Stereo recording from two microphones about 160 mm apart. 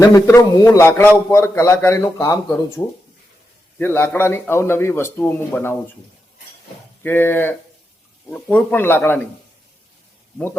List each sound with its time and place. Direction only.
0.0 s a man's voice: 20° left (ahead or behind)
7.0 s a man's voice: 10° left (ahead or behind)